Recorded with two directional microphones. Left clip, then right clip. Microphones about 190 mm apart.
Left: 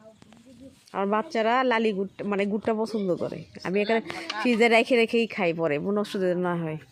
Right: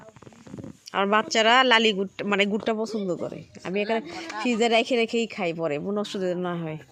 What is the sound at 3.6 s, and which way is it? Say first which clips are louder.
Speech: left 1 dB; 5° left (ahead or behind).